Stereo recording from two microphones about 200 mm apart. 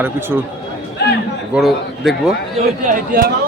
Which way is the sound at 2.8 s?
45° right (ahead or behind).